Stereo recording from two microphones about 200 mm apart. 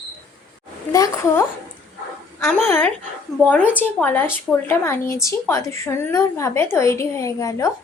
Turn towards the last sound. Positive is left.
turn(degrees=15)  # may be behind; listen again after turning